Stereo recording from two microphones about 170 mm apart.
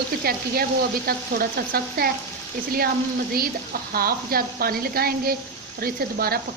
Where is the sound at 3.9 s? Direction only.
60° right (ahead or behind).